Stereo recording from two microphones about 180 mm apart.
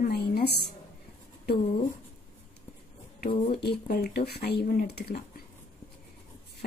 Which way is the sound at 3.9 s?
60° left (ahead or behind).